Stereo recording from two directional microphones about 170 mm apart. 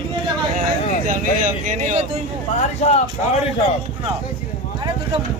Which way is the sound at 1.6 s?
45° right (ahead or behind).